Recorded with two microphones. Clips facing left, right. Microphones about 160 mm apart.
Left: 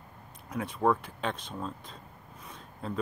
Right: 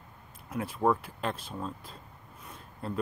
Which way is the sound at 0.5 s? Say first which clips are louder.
Even; 5° right (ahead or behind).